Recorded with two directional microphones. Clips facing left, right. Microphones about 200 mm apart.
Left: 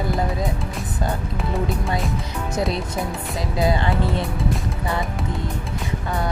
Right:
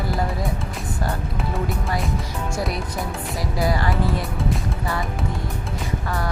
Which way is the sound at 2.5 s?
20° left (ahead or behind).